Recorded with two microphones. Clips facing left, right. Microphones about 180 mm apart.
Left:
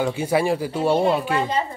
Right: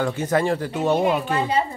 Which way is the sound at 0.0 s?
10° left (ahead or behind).